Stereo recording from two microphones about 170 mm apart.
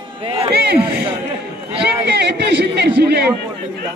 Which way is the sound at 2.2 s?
80° right.